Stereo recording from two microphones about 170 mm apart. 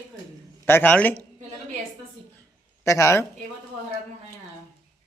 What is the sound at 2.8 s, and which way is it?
Speech, 15° left (ahead or behind).